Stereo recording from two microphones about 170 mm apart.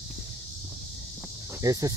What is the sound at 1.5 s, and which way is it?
Speech, 20° right (ahead or behind).